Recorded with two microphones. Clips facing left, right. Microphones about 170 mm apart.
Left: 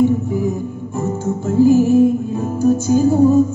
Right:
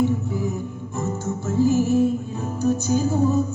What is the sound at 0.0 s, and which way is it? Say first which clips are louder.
Music: left 7 dB; 15° left (ahead or behind).